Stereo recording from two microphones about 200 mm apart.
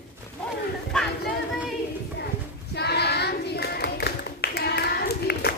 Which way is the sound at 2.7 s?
55° left (ahead or behind).